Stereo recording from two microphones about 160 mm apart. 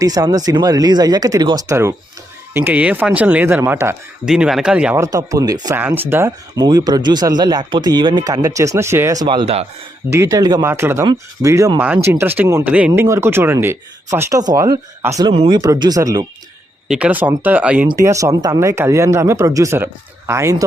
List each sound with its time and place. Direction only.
0.0 s speech: 25° right (ahead or behind)
4.3 s speech: 5° right (ahead or behind)
5.0 s speech: 20° right (ahead or behind)
6.6 s speech: 25° right (ahead or behind)
9.2 s speech: 30° right (ahead or behind)
10.1 s speech: 20° right (ahead or behind)
15.3 s speech: 35° right (ahead or behind)
16.9 s speech: 10° right (ahead or behind)
17.8 s speech: 20° right (ahead or behind)